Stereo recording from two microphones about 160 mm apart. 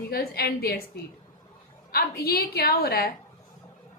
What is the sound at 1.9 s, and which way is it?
A woman's voice, 75° left (ahead or behind).